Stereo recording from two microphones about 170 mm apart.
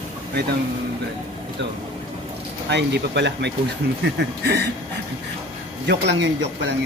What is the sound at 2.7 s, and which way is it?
Speech, 90° right.